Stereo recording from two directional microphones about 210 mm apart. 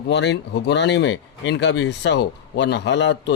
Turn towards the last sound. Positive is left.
turn(degrees=60)  # may be behind; listen again after turning